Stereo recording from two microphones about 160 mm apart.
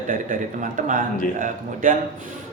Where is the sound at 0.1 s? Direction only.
55° right (ahead or behind).